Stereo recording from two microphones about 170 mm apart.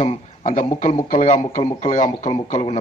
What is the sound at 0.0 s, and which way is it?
Speech, 40° left (ahead or behind).